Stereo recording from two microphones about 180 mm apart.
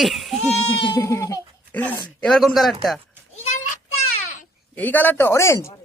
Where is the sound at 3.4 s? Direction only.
40° left (ahead or behind).